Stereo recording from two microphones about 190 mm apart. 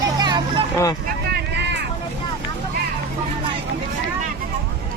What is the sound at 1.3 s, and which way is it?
Vehicle, 65° right (ahead or behind).